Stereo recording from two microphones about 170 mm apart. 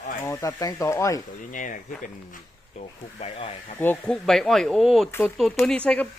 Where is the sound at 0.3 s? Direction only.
20° left (ahead or behind).